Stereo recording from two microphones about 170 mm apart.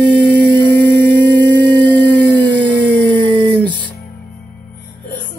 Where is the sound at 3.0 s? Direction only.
30° right (ahead or behind).